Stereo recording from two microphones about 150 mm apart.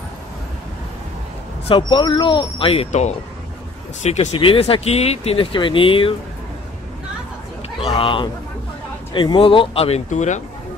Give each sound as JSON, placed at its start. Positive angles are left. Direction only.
{"t": 1.8, "sound": "speech", "side_deg": 30}
{"t": 4.4, "sound": "speech", "side_deg": 40}
{"t": 7.8, "sound": "speech", "side_deg": 35}